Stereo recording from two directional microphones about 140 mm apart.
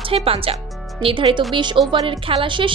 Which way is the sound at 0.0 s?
40° right (ahead or behind).